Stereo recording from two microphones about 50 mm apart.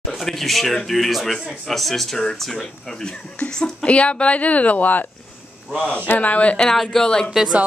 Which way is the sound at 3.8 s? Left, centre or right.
Left.